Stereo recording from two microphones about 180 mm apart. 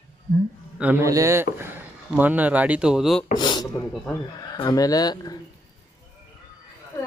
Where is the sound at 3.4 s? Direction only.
25° left (ahead or behind).